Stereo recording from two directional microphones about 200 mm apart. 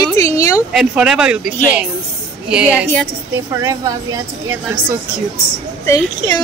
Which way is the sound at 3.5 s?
15° right (ahead or behind).